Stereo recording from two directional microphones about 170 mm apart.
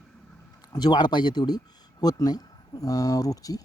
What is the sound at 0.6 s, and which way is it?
Speech, 25° left (ahead or behind).